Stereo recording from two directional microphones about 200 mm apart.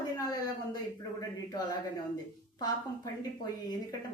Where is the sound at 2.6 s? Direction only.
20° left (ahead or behind).